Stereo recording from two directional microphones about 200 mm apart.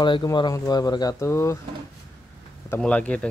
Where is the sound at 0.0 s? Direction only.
20° left (ahead or behind).